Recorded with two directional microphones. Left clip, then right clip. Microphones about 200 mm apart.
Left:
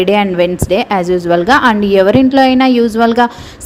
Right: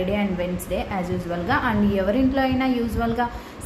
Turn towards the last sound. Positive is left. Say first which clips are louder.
# left 14 dB
turn(degrees=45)  # may be behind; listen again after turning